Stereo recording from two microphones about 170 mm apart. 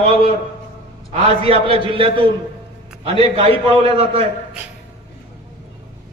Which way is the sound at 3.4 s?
35° right (ahead or behind).